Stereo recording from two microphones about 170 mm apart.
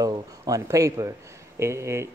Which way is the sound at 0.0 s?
20° right (ahead or behind).